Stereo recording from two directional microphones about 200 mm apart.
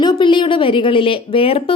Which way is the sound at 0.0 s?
25° left (ahead or behind).